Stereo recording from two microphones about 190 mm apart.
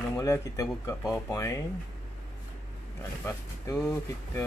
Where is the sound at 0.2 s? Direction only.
15° left (ahead or behind).